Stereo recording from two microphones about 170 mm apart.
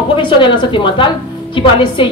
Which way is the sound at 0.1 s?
30° left (ahead or behind).